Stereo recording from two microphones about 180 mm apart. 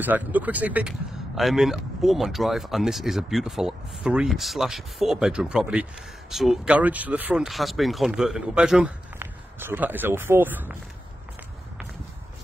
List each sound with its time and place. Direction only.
0.0 s speech: 10° right (ahead or behind)